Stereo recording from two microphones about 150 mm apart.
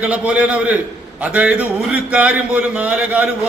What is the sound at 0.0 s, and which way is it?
Speech, 10° right (ahead or behind).